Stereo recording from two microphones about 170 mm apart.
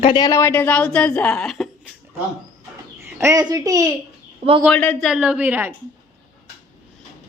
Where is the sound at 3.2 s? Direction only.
20° right (ahead or behind).